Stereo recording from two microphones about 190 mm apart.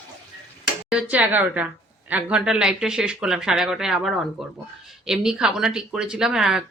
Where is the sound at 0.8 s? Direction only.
5° right (ahead or behind).